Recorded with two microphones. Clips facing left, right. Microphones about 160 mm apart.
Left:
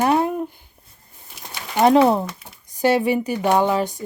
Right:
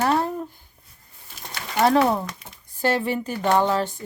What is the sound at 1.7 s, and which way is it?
Speech, 15° left (ahead or behind).